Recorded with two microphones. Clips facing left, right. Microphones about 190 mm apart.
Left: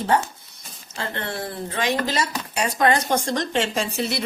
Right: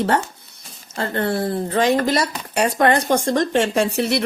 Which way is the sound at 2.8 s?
55° right (ahead or behind).